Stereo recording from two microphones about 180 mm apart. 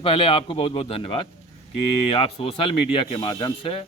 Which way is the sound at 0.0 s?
30° left (ahead or behind).